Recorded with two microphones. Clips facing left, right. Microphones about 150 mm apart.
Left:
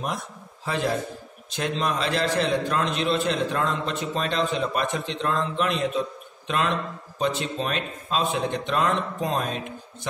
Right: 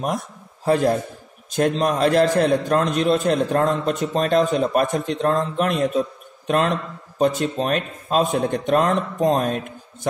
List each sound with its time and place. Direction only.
0.7 s a man's voice: 45° right (ahead or behind)